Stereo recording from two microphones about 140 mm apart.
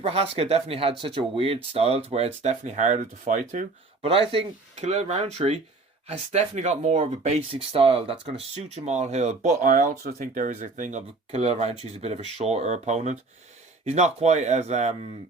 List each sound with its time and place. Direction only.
0.0 s speech: 45° right (ahead or behind); by 3.7 s 65° right (ahead or behind)
4.0 s speech: 40° right (ahead or behind)
8.7 s speech: 55° right (ahead or behind)
9.5 s speech: 75° right (ahead or behind); by 15.1 s 55° right (ahead or behind)